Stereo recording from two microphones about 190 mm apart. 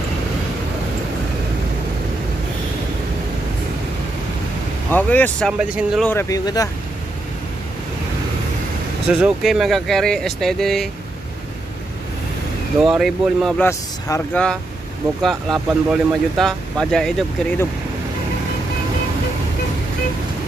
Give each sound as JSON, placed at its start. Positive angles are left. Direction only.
{"t": 4.9, "sound": "speech", "side_deg": 10}
{"t": 5.6, "sound": "speech", "side_deg": -5}
{"t": 6.0, "sound": "speech", "side_deg": 15}
{"t": 9.2, "sound": "speech", "side_deg": 0}
{"t": 12.8, "sound": "speech", "side_deg": 0}
{"t": 13.6, "sound": "speech", "side_deg": 15}